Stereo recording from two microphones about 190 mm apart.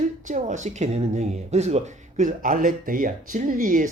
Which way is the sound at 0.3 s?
40° right (ahead or behind).